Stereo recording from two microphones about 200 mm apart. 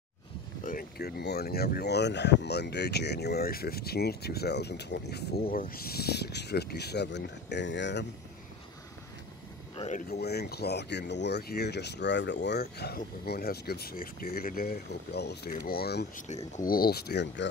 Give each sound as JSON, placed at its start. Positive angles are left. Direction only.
{"t": 0.7, "sound": "speech", "side_deg": 50}
{"t": 9.8, "sound": "speech", "side_deg": 35}
{"t": 10.0, "sound": "speech", "side_deg": 55}
{"t": 16.3, "sound": "speech", "side_deg": 35}